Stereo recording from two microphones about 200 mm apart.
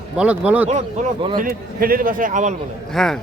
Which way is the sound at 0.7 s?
30° right (ahead or behind).